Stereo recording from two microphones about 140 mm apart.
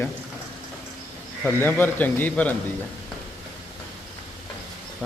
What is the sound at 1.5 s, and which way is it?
Speech, 15° left (ahead or behind).